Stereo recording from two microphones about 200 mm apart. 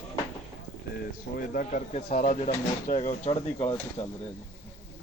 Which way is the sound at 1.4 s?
45° left (ahead or behind).